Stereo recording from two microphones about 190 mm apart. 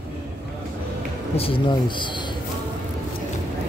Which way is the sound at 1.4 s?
25° left (ahead or behind).